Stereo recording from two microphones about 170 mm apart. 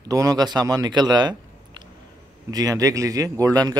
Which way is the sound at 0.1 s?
20° right (ahead or behind).